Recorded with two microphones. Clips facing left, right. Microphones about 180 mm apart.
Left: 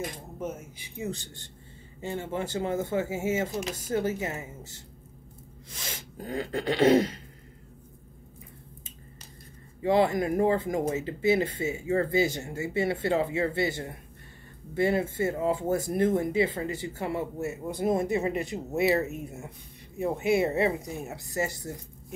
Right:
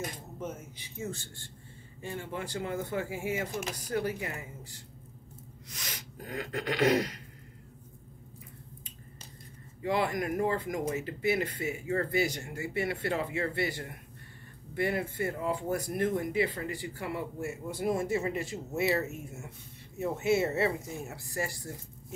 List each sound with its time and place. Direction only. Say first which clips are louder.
0.4 s speech: left 4 dB; 10° left (ahead or behind); by 7.2 s 25° left (ahead or behind)
9.8 s speech: left 6 dB; 25° left (ahead or behind)